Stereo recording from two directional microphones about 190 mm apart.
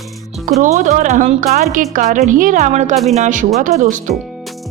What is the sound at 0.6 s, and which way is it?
A woman's voice, 40° right (ahead or behind).